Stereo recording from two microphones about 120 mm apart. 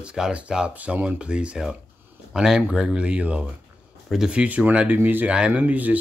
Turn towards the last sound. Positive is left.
turn(degrees=-15)  # may be behind; listen again after turning